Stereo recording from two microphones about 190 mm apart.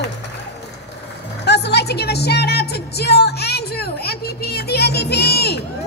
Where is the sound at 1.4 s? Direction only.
60° left (ahead or behind).